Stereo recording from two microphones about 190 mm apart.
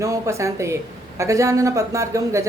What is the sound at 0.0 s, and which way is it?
Speech, 15° right (ahead or behind).